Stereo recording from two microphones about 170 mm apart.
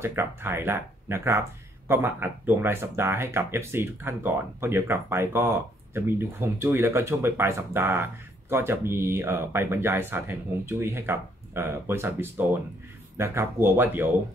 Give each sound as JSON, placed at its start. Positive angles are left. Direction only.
{"t": 0.0, "sound": "speech", "side_deg": -15}